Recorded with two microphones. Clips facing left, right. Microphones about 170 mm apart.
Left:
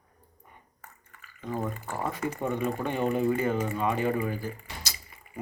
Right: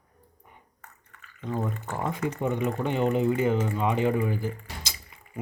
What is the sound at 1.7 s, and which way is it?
Speech, 10° left (ahead or behind).